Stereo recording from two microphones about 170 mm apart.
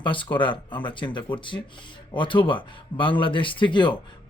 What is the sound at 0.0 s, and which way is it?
Speech, 30° left (ahead or behind).